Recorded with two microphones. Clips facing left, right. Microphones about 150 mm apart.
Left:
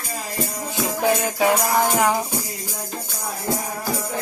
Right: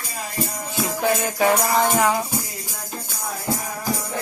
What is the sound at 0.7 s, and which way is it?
Music, 15° left (ahead or behind).